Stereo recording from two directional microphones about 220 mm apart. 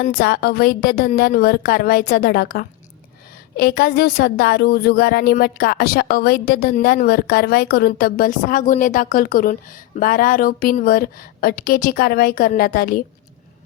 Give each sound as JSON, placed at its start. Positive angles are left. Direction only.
{"t": 0.0, "sound": "a woman's voice", "side_deg": 40}